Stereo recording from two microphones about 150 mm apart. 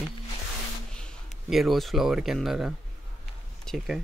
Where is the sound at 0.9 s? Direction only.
Centre (ahead or behind).